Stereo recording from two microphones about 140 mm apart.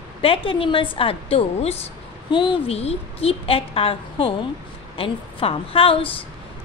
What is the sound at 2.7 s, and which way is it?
A woman's voice, 45° left (ahead or behind).